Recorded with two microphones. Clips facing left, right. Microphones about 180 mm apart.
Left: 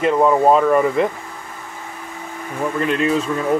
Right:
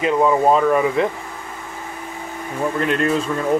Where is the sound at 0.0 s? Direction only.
Centre (ahead or behind).